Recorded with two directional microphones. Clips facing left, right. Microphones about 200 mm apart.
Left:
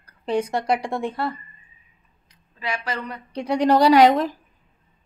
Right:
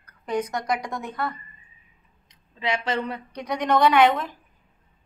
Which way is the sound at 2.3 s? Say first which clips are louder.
Right 2 dB; 25° right (ahead or behind).